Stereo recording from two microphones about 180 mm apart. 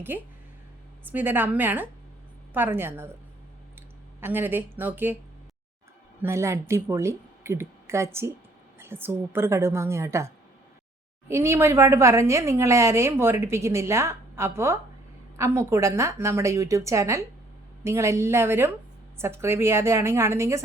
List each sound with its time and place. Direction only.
0.1 s a woman's voice: 10° right (ahead or behind)
4.2 s a woman's voice: 10° right (ahead or behind)
6.2 s a woman's voice: 15° right (ahead or behind)